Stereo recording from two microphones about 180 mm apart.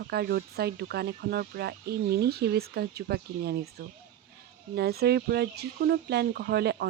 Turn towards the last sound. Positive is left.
turn(degrees=-65)  # may be behind; listen again after turning